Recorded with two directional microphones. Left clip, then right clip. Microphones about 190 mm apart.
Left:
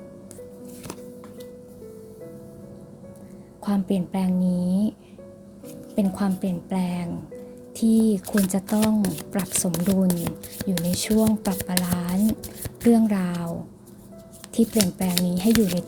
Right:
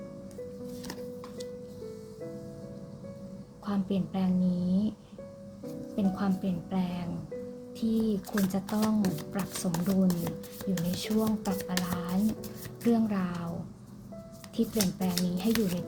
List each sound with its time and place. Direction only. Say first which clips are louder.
3.7 s speech: left 7 dB; 30° left (ahead or behind)
6.0 s speech: left 7 dB; 35° left (ahead or behind)
14.5 s speech: left 8 dB; 35° left (ahead or behind)